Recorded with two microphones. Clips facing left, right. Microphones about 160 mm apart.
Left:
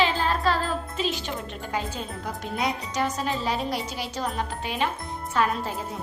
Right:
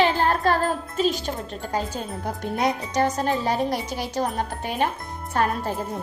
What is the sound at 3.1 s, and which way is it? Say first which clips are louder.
Speech: right 4 dB; 50° right (ahead or behind).